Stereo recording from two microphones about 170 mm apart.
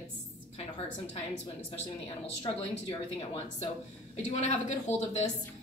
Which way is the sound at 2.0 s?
30° left (ahead or behind).